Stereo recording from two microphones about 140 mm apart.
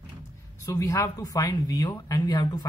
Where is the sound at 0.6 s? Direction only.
20° left (ahead or behind).